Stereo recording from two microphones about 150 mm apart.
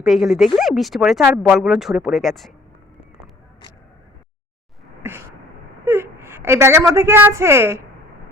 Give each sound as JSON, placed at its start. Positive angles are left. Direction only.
{"t": 0.0, "sound": "speech", "side_deg": 0}
{"t": 5.0, "sound": "a sound", "side_deg": -15}
{"t": 5.8, "sound": "a woman's voice", "side_deg": -15}